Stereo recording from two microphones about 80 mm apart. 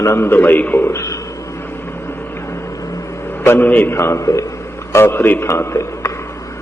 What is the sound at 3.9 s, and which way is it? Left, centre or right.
Speech, left.